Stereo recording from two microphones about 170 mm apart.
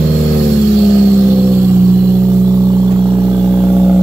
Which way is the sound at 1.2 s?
15° right (ahead or behind).